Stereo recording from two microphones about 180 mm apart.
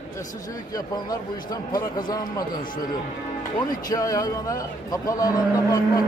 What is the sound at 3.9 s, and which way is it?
A man's voice, 20° left (ahead or behind).